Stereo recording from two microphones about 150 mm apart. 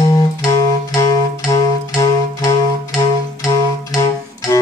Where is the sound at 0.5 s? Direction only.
20° left (ahead or behind).